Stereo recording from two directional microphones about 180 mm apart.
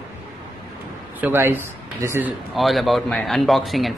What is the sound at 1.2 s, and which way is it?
Speech, 10° right (ahead or behind).